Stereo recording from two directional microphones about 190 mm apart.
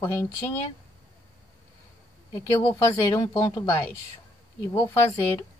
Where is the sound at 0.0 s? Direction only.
15° left (ahead or behind).